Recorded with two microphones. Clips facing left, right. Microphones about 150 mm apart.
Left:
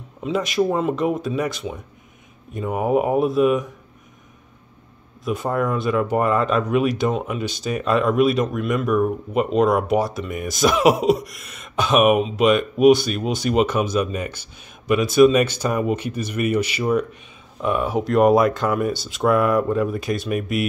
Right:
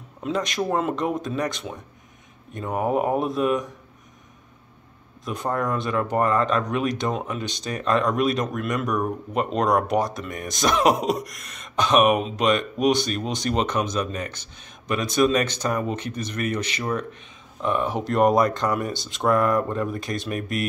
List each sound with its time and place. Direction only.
0.2 s speech: 5° left (ahead or behind)
5.2 s speech: 5° left (ahead or behind)